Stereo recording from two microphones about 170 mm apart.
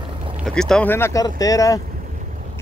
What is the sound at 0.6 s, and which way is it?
Speech, 5° left (ahead or behind).